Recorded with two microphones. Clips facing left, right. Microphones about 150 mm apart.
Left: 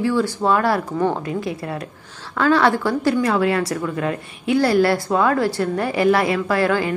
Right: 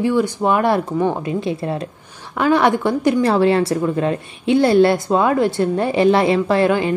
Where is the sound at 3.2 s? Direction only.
30° right (ahead or behind).